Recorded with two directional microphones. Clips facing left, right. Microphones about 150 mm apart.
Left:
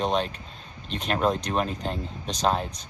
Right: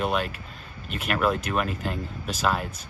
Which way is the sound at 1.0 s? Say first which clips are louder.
Even; 35° left (ahead or behind).